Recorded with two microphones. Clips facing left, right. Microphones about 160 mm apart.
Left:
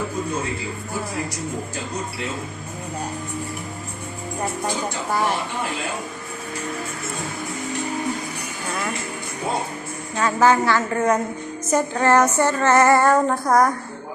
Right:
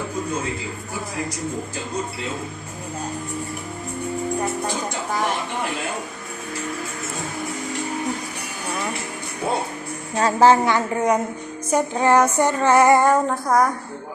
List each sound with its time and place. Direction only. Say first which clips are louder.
10.2 s a woman's voice: right 2 dB; 35° right (ahead or behind)
10.7 s female singing: even; 15° right (ahead or behind)
13.2 s a woman's voice: left 1 dB; 5° right (ahead or behind)